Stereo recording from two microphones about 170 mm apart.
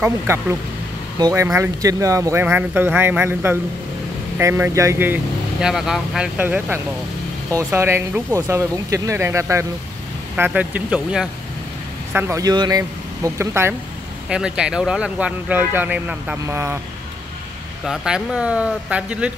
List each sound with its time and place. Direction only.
0.0 s speech: 15° right (ahead or behind)
17.8 s speech: 5° right (ahead or behind)